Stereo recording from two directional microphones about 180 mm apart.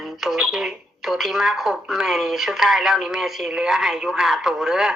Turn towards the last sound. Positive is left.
turn(degrees=0)  # may be behind; listen again after turning